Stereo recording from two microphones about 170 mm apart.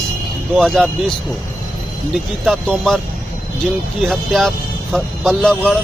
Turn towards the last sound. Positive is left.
turn(degrees=0)  # may be behind; listen again after turning